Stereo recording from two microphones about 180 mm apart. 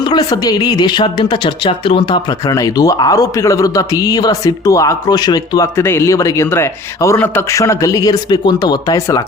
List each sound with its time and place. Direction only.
0.0 s speech: 25° left (ahead or behind)